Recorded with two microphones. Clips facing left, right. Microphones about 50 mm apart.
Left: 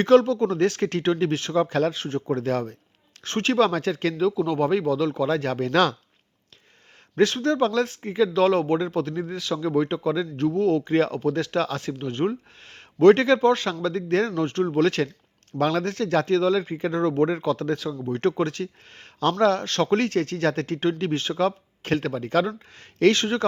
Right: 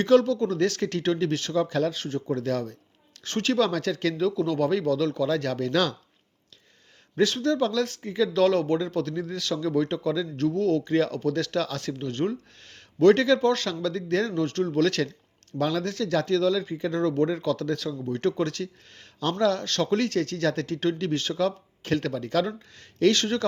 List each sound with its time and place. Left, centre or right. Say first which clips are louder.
0.0 s a man's voice: left 3 dB; left
4.2 s speech: left 3 dB; centre
5.2 s speech: left 2 dB; left
7.2 s a man's voice: left 3 dB; left
7.9 s speech: left 3 dB; left
9.4 s speech: left 1 dB; centre
9.6 s speech: left 2 dB; left
10.9 s a man's voice: left 2 dB; left
11.2 s a man's voice: left 2 dB; centre; by 14.4 s left
14.4 s speech: left 2 dB; left
15.5 s a man's voice: left 3 dB; left; by 18.1 s centre
18.1 s a man's voice: left 3 dB; left
18.4 s speech: left 2 dB; left
18.9 s a man's voice: left 6 dB; left